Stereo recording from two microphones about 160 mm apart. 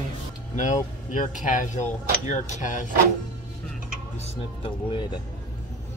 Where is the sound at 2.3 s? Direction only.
45° left (ahead or behind).